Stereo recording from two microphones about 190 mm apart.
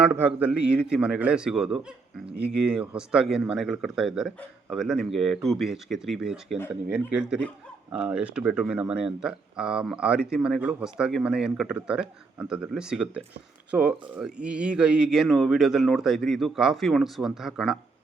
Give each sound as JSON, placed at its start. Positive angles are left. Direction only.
{"t": 0.0, "sound": "speech", "side_deg": -5}
{"t": 2.3, "sound": "speech", "side_deg": -60}
{"t": 2.6, "sound": "speech", "side_deg": -5}